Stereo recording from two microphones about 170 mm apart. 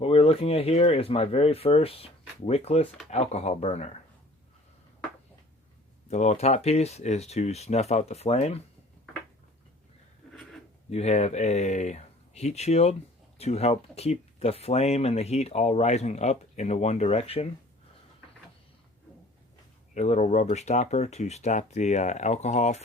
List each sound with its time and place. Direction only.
0.0 s speech: 35° left (ahead or behind)
6.1 s speech: 40° left (ahead or behind)
10.8 s speech: 40° left (ahead or behind)
19.9 s speech: 45° left (ahead or behind)